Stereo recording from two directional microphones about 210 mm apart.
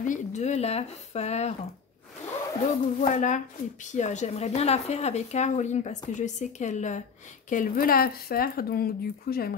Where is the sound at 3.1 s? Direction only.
35° left (ahead or behind).